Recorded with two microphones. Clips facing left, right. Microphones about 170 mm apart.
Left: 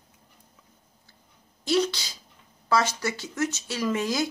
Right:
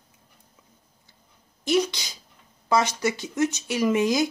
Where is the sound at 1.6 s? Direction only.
15° right (ahead or behind).